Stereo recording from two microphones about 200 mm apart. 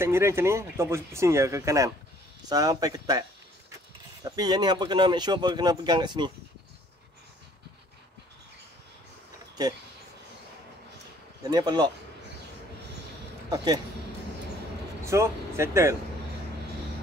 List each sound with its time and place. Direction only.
0.0 s speech: 15° right (ahead or behind)
11.5 s speech: 20° right (ahead or behind)
15.0 s speech: 15° right (ahead or behind)